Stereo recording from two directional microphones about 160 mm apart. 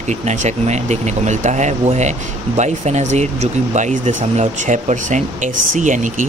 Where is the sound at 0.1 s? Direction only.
45° right (ahead or behind).